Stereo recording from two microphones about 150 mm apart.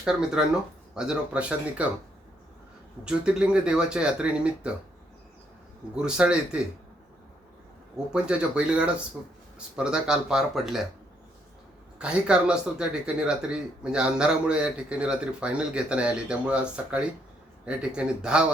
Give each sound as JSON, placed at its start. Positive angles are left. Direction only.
{"t": 0.0, "sound": "speech", "side_deg": -5}
{"t": 3.0, "sound": "speech", "side_deg": -5}
{"t": 5.9, "sound": "speech", "side_deg": -5}
{"t": 7.9, "sound": "speech", "side_deg": -5}
{"t": 11.9, "sound": "speech", "side_deg": -5}